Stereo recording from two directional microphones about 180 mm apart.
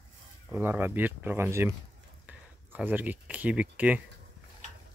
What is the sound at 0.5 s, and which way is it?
Speech, 10° right (ahead or behind).